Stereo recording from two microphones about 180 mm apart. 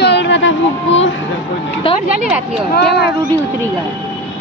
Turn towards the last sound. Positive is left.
turn(degrees=65)  # may be behind; listen again after turning